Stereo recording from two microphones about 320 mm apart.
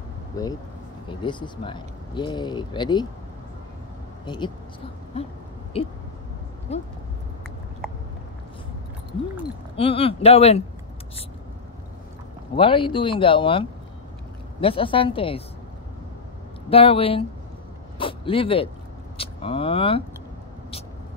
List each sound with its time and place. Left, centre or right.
0.3 s speech: centre
5.7 s speech: centre
9.4 s speech: centre
12.5 s speech: centre
16.6 s speech: centre